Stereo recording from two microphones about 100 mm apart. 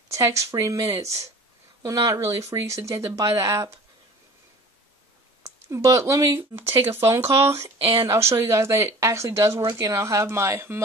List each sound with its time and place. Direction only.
0.1 s speech: 30° right (ahead or behind)
5.7 s speech: 30° right (ahead or behind)